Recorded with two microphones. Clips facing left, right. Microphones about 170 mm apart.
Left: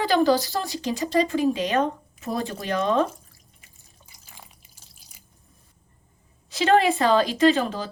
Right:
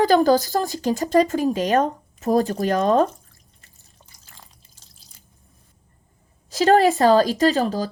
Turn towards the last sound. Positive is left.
turn(degrees=-40)  # may be behind; listen again after turning